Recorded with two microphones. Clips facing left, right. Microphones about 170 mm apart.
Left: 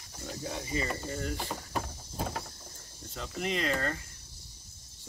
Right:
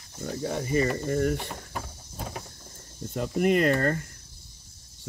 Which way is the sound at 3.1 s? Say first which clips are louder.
Right 11 dB; 55° right (ahead or behind).